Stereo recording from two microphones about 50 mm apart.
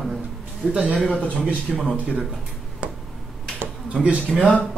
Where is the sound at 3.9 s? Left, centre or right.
Right.